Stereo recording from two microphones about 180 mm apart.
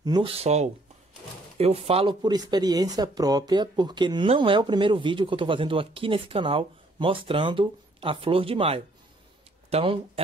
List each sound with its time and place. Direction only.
0.0 s speech: 25° right (ahead or behind)